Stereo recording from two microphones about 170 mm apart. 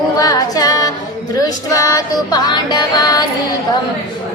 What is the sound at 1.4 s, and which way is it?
Music, 20° left (ahead or behind).